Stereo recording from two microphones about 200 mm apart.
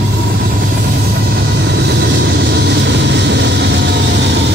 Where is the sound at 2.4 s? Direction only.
60° right (ahead or behind).